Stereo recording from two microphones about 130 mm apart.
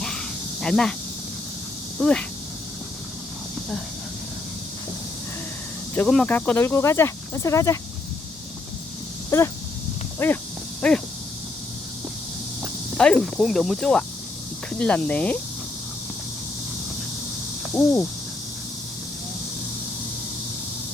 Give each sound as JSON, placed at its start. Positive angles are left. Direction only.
{"t": 0.0, "sound": "snake", "side_deg": 5}
{"t": 2.0, "sound": "speech", "side_deg": 5}
{"t": 6.1, "sound": "speech", "side_deg": 10}
{"t": 9.3, "sound": "speech", "side_deg": 20}
{"t": 10.8, "sound": "a sound", "side_deg": 5}
{"t": 13.0, "sound": "speech", "side_deg": 5}